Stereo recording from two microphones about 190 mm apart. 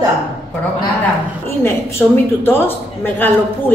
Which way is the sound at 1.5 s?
10° left (ahead or behind).